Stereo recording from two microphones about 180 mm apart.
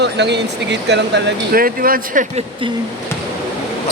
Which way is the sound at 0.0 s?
70° right (ahead or behind).